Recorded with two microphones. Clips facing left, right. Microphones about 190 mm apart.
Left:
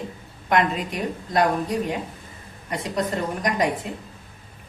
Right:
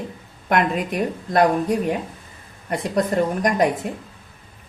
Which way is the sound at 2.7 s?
50° right (ahead or behind).